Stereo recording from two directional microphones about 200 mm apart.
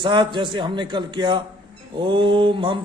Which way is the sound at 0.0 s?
25° right (ahead or behind).